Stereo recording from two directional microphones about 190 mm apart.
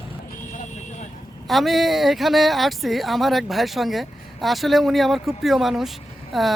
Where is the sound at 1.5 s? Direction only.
Centre (ahead or behind).